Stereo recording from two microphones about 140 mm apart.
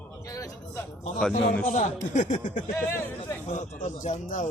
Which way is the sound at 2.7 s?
20° left (ahead or behind).